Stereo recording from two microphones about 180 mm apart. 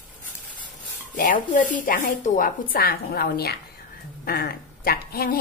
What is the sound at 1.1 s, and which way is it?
A woman's voice, 45° left (ahead or behind).